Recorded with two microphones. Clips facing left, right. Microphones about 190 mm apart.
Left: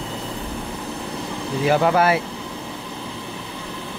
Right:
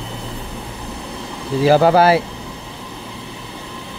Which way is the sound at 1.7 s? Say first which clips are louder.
Right 5 dB; 35° right (ahead or behind).